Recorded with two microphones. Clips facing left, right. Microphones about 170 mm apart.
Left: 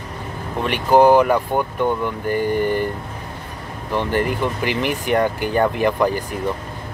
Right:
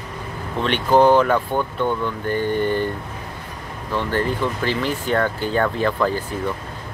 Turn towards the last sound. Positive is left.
turn(degrees=15)  # may be behind; listen again after turning